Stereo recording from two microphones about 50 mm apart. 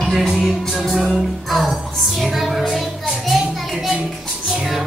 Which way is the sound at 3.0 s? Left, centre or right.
Centre.